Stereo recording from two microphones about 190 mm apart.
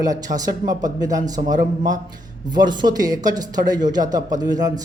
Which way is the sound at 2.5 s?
20° right (ahead or behind).